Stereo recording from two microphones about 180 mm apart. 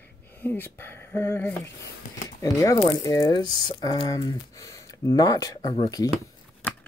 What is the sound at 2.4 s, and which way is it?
Speech, 20° left (ahead or behind).